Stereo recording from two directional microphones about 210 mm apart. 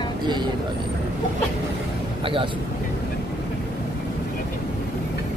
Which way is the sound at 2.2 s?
25° right (ahead or behind).